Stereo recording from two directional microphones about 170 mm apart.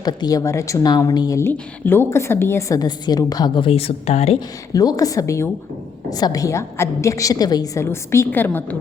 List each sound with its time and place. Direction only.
0.0 s speech: 25° left (ahead or behind); by 4.4 s 40° left (ahead or behind)
4.4 s a woman's voice: 20° left (ahead or behind)